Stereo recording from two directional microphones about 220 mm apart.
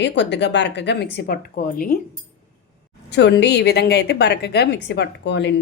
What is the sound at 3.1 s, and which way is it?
A woman's voice, 50° left (ahead or behind).